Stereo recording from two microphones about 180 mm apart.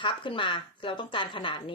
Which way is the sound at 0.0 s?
25° left (ahead or behind).